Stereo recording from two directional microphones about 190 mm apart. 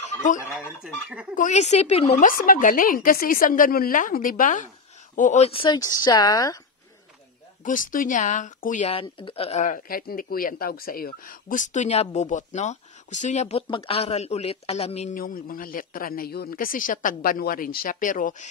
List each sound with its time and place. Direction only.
0.0 s fowl: 45° left (ahead or behind)
1.3 s a woman's voice: 40° left (ahead or behind)
2.2 s speech: 45° left (ahead or behind); by 6.6 s 20° left (ahead or behind)
7.6 s speech: 45° left (ahead or behind)